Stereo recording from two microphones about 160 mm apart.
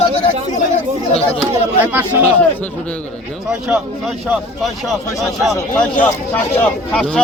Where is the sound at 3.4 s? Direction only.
5° right (ahead or behind).